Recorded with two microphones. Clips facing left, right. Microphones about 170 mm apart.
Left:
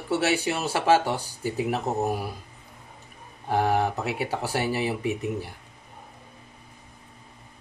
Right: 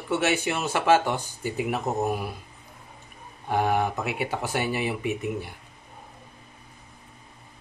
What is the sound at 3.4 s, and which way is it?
Speech, 35° left (ahead or behind).